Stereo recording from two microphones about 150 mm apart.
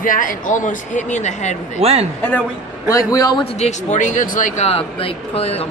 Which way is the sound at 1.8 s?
45° right (ahead or behind).